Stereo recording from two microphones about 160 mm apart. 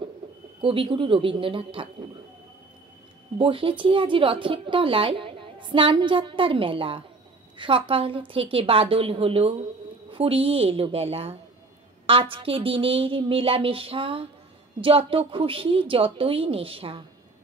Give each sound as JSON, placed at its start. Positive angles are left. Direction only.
{"t": 0.6, "sound": "speech", "side_deg": -35}
{"t": 3.3, "sound": "a woman's voice", "side_deg": -35}